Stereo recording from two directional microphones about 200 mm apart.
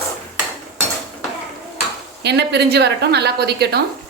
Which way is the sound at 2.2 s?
60° right (ahead or behind).